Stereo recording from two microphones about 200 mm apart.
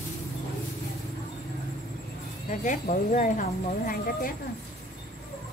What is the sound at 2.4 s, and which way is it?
Speech, 40° left (ahead or behind).